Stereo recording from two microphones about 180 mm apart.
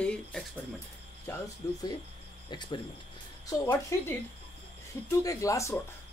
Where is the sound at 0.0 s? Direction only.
5° left (ahead or behind).